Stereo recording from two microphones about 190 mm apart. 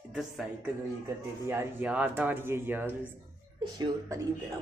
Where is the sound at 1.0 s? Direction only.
10° right (ahead or behind).